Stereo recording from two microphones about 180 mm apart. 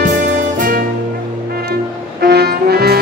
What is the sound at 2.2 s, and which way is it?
Music, 60° right (ahead or behind).